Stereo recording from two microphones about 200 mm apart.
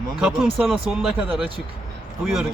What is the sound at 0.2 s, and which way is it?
Speech, centre (ahead or behind).